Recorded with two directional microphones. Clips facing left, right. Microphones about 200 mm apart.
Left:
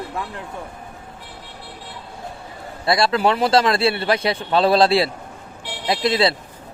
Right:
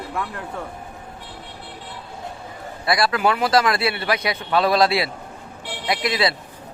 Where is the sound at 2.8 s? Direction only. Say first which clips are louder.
Left 2 dB; 25° left (ahead or behind).